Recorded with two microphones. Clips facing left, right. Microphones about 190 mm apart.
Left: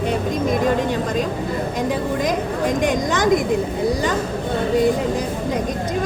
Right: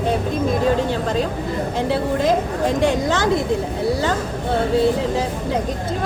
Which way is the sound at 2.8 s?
15° left (ahead or behind).